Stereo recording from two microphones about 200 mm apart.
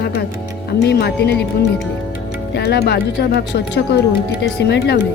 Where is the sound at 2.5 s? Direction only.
55° left (ahead or behind).